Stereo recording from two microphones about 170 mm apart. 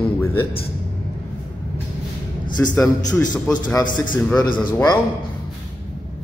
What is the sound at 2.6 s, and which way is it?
Speech, 15° left (ahead or behind).